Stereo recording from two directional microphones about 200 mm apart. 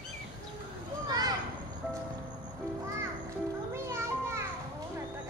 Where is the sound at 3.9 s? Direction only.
15° right (ahead or behind).